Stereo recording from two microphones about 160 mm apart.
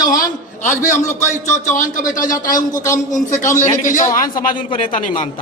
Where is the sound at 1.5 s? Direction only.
50° left (ahead or behind).